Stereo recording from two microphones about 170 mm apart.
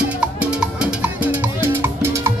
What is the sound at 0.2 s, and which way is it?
Music, 5° right (ahead or behind).